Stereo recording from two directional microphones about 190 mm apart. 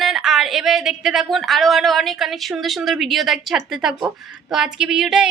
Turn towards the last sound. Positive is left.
turn(degrees=-5)  # may be behind; listen again after turning